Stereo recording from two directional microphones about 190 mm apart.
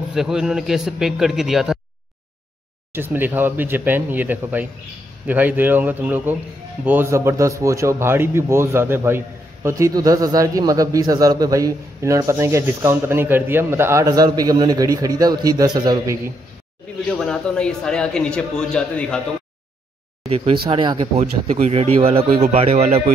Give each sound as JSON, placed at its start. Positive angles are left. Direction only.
{"t": 0.1, "sound": "a man's voice", "side_deg": -5}
{"t": 2.9, "sound": "a man's voice", "side_deg": -10}
{"t": 17.1, "sound": "a man's voice", "side_deg": 5}
{"t": 20.2, "sound": "speech", "side_deg": -30}